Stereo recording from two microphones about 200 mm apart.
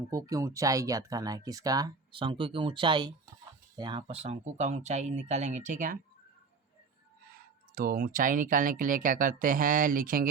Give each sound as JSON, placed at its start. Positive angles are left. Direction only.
{"t": 0.1, "sound": "speech", "side_deg": -15}
{"t": 7.8, "sound": "speech", "side_deg": -45}